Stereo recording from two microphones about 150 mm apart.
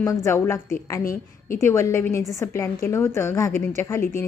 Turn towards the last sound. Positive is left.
turn(degrees=15)  # may be behind; listen again after turning